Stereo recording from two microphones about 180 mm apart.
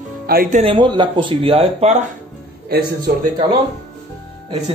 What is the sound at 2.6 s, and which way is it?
Speech, 60° right (ahead or behind).